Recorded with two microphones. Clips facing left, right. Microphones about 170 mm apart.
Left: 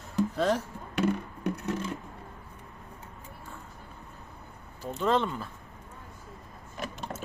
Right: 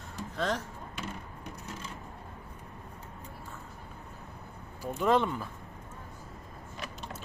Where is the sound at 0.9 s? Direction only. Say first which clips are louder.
Left 15 dB; 65° left (ahead or behind).